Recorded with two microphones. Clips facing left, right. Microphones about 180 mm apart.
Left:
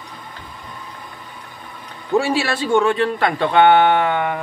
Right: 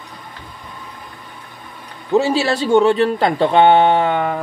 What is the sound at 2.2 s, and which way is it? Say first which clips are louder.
A man's voice: right 3 dB; 20° right (ahead or behind).